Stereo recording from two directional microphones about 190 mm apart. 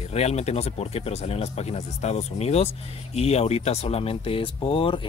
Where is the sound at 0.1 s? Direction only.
35° left (ahead or behind).